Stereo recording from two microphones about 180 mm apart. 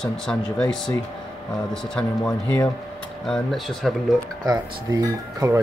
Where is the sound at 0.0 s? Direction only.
5° left (ahead or behind).